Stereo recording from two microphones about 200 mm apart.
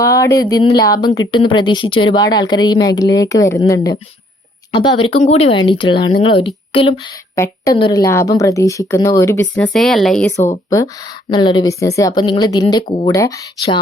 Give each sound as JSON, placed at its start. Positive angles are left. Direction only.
{"t": 0.0, "sound": "a woman's voice", "side_deg": 15}
{"t": 7.3, "sound": "speech", "side_deg": 15}
{"t": 10.7, "sound": "a woman's voice", "side_deg": 20}